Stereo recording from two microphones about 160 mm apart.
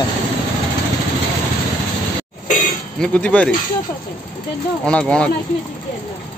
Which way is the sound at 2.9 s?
5° left (ahead or behind).